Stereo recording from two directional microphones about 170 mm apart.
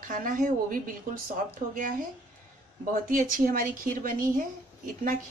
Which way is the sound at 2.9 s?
55° right (ahead or behind).